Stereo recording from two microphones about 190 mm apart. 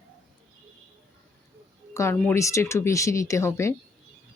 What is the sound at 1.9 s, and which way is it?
Speech, 15° left (ahead or behind).